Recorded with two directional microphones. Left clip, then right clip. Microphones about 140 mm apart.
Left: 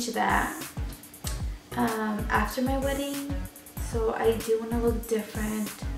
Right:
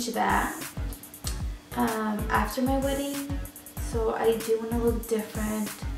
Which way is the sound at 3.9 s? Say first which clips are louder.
Even; centre (ahead or behind).